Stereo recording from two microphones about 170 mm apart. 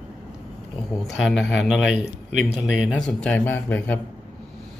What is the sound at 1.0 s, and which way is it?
Speech, centre (ahead or behind).